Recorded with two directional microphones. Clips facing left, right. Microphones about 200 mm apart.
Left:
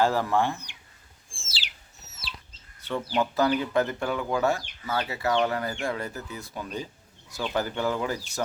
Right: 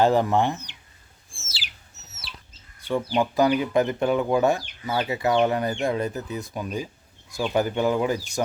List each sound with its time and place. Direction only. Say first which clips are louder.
0.0 s speech: right 4 dB; 20° right (ahead or behind)
1.4 s bird: even; 30° left (ahead or behind)
2.5 s chicken: right 5 dB; 10° right (ahead or behind)
3.2 s speech: right 3 dB; 15° right (ahead or behind)